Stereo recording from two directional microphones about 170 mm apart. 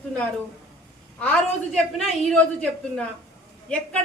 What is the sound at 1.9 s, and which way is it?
A woman's voice, 5° left (ahead or behind).